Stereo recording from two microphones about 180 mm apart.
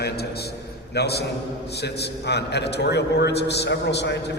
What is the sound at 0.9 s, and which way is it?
A man's voice, 65° left (ahead or behind).